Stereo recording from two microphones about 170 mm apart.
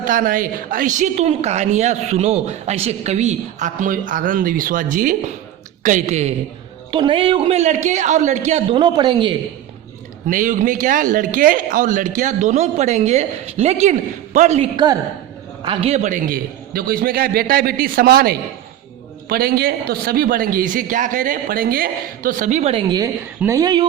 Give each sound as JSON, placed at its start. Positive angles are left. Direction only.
{"t": 0.0, "sound": "a woman's voice", "side_deg": -55}
{"t": 6.9, "sound": "a man's voice", "side_deg": -30}
{"t": 8.7, "sound": "a man's voice", "side_deg": -25}
{"t": 10.2, "sound": "a woman's voice", "side_deg": -50}
{"t": 22.9, "sound": "a man's voice", "side_deg": -20}